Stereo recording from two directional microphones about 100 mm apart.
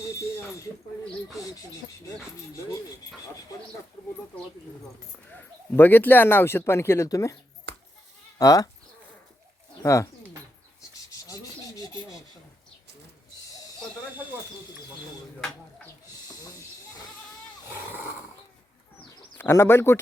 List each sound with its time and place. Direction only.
5.3 s speech: 20° left (ahead or behind)
8.4 s speech: 35° left (ahead or behind)
9.8 s speech: 30° left (ahead or behind)
19.4 s speech: 25° left (ahead or behind)